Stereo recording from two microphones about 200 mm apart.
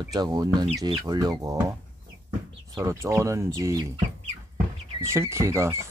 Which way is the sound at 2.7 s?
15° right (ahead or behind).